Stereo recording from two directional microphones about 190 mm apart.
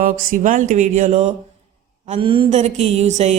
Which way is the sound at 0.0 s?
45° right (ahead or behind).